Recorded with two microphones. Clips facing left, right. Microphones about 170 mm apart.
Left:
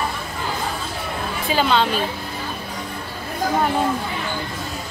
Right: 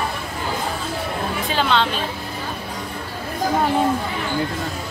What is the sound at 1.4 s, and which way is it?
Speech, 5° left (ahead or behind).